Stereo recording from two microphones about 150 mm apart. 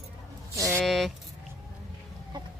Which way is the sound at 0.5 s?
20° right (ahead or behind).